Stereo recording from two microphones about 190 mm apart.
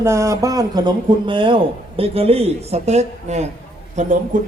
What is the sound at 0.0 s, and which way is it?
A man's voice, 15° right (ahead or behind).